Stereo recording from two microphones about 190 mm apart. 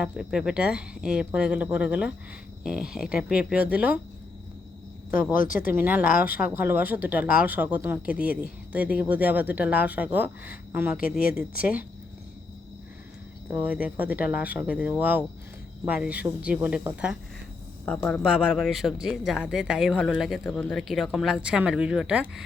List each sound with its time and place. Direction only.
0.0 s speech: 5° right (ahead or behind)
5.3 s speech: 45° left (ahead or behind)
5.7 s speech: 10° right (ahead or behind)
13.5 s speech: 10° right (ahead or behind)
17.8 s speech: 10° left (ahead or behind)